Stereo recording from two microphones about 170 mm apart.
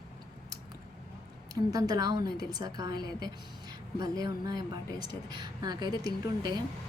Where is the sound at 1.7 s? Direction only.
20° right (ahead or behind).